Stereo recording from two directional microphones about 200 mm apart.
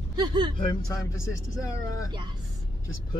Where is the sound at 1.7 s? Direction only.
15° left (ahead or behind).